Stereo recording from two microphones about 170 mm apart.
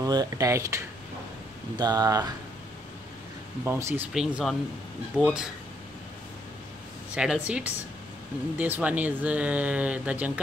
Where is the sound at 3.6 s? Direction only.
15° right (ahead or behind).